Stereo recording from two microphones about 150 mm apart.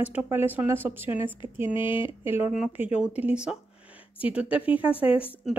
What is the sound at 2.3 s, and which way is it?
Speech, 15° right (ahead or behind).